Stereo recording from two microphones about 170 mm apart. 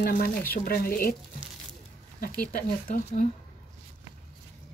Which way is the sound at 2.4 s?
50° left (ahead or behind).